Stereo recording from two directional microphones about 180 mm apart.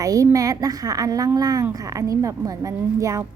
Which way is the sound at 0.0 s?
20° right (ahead or behind).